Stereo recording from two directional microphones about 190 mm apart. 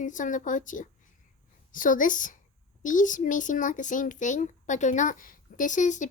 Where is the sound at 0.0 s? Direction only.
40° left (ahead or behind).